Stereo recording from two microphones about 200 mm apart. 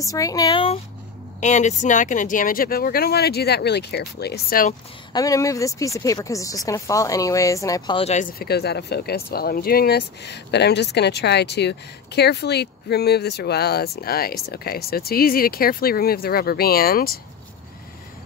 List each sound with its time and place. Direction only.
0.0 s speech: 15° left (ahead or behind)
1.4 s speech: 35° left (ahead or behind)
5.1 s speech: 15° left (ahead or behind); by 8.3 s 30° left (ahead or behind)
8.4 s speech: 55° left (ahead or behind)